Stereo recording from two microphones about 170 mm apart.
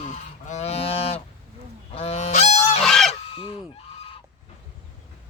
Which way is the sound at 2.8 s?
Centre (ahead or behind).